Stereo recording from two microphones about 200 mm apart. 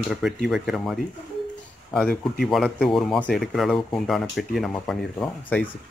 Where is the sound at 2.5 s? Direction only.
Centre (ahead or behind).